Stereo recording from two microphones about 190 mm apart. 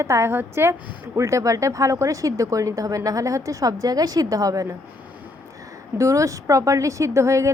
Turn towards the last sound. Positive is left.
turn(degrees=-15)  # may be behind; listen again after turning